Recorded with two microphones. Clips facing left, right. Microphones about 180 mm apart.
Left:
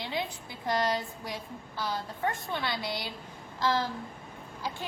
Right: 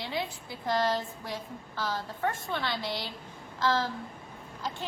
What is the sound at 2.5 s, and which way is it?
A woman's voice, 15° left (ahead or behind).